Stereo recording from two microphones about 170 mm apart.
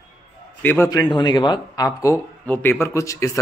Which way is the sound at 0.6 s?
10° left (ahead or behind).